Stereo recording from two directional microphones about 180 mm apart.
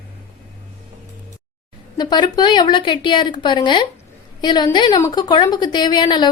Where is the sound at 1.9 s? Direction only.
25° left (ahead or behind).